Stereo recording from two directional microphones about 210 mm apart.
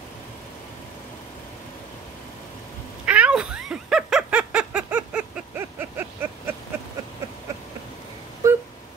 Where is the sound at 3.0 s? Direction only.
5° right (ahead or behind).